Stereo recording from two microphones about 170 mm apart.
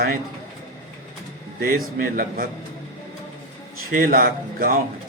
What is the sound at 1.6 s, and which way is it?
Speech, 60° right (ahead or behind).